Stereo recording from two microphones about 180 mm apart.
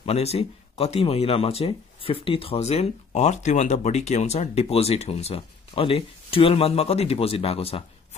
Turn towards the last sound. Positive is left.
turn(degrees=30)  # may be behind; listen again after turning